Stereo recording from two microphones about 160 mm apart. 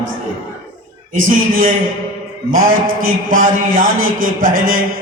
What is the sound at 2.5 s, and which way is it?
A man's voice, 65° right (ahead or behind).